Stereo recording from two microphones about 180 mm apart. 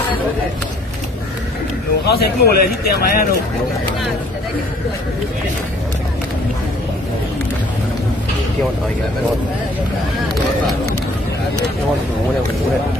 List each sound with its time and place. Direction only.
2.0 s a man's voice: 60° left (ahead or behind)